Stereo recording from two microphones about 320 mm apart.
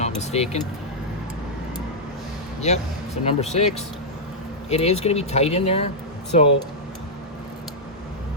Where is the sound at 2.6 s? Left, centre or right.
Left.